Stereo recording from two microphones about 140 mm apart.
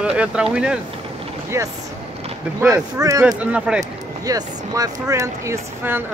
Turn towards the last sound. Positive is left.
turn(degrees=-20)  # may be behind; listen again after turning